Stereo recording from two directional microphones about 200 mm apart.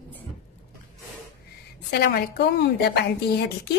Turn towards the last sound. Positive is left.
turn(degrees=55)  # may be behind; listen again after turning